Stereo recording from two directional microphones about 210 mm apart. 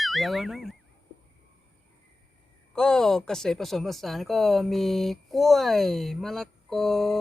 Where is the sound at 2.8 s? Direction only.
5° left (ahead or behind).